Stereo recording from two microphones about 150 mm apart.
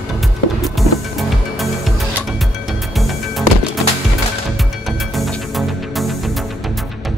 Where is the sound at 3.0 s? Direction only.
Centre (ahead or behind).